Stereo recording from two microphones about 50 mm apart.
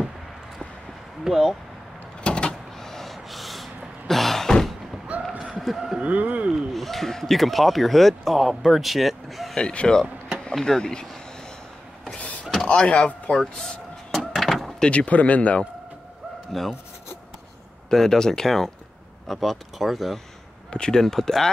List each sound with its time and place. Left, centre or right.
1.2 s speech: centre
2.2 s vehicle: centre
2.8 s a sound: centre
5.1 s a sound: right
5.6 s speech: centre
5.9 s speech: right
6.7 s speech: centre
9.6 s speech: centre
12.6 s speech: left
13.4 s door: centre
14.8 s speech: left
16.5 s speech: centre
17.8 s speech: centre
20.7 s speech: centre